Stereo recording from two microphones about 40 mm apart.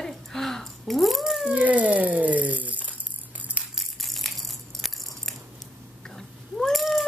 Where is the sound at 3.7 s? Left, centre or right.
Centre.